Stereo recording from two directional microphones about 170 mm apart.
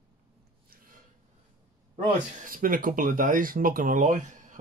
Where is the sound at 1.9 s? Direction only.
55° right (ahead or behind).